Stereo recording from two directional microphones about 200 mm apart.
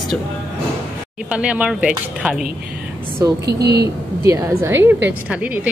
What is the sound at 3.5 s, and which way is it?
Speech, 55° right (ahead or behind).